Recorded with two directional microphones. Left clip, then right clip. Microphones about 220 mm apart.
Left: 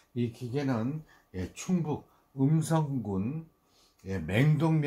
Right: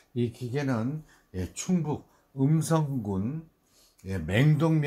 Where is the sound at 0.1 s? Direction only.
30° right (ahead or behind).